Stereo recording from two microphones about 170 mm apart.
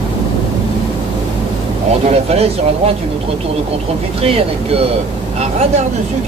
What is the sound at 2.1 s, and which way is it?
Speech, 35° right (ahead or behind).